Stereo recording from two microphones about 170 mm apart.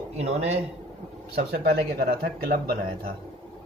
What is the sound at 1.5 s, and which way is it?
Speech, 70° right (ahead or behind).